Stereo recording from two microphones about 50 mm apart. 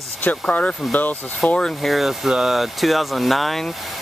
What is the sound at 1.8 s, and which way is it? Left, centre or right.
Speech, centre.